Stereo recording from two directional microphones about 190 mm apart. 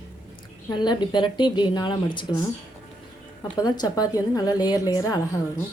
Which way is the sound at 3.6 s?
20° left (ahead or behind).